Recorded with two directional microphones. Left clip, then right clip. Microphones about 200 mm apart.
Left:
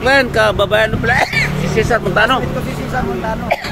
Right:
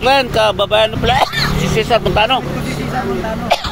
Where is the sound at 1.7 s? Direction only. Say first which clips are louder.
Right 1 dB; 20° right (ahead or behind).